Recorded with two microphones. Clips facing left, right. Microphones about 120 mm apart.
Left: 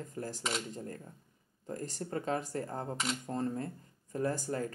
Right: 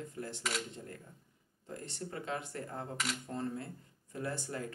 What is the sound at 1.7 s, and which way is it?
Speech, 40° left (ahead or behind).